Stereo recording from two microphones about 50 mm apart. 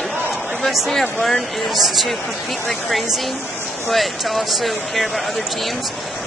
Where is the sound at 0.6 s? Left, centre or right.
Centre.